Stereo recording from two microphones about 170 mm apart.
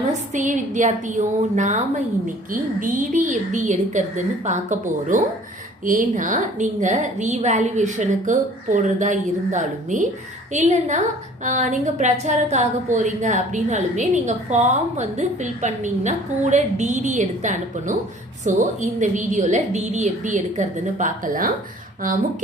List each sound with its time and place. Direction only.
0.3 s a woman's voice: 45° right (ahead or behind)